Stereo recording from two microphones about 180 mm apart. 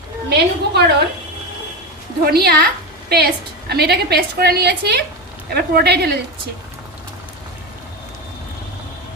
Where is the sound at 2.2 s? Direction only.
60° right (ahead or behind).